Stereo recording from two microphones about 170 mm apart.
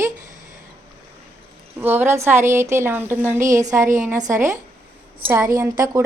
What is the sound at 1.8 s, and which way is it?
A woman's voice, 10° right (ahead or behind).